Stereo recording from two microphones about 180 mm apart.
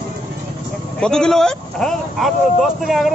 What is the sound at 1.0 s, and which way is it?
Speech, 5° left (ahead or behind).